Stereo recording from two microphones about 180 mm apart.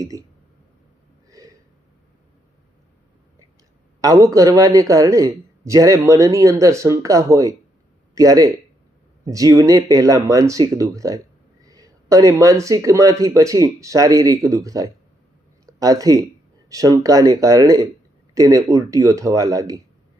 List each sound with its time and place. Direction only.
0.0 s a man's voice: 20° right (ahead or behind)
1.3 s a sound: 20° right (ahead or behind)
4.0 s a man's voice: 20° right (ahead or behind)